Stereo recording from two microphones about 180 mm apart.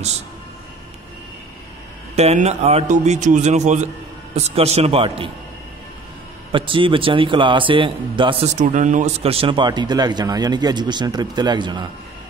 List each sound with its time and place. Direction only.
2.1 s a man's voice: 35° right (ahead or behind)
6.5 s speech: 30° right (ahead or behind)
8.5 s speech: 45° right (ahead or behind); by 11.8 s 25° right (ahead or behind)